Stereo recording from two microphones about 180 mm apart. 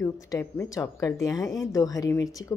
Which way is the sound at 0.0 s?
15° left (ahead or behind).